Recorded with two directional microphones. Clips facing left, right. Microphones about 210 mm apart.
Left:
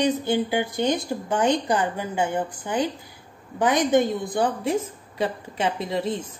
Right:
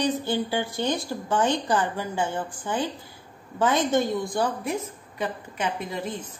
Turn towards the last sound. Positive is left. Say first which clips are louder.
# left 4 dB
turn(degrees=25)  # may be behind; listen again after turning